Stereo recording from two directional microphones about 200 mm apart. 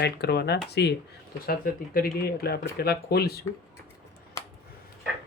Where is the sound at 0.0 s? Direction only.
55° left (ahead or behind).